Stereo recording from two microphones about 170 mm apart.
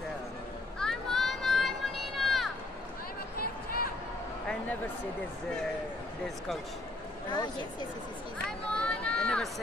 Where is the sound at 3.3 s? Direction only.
60° left (ahead or behind).